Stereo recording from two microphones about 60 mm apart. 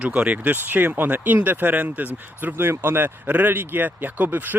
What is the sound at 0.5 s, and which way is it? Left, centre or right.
Speech, right.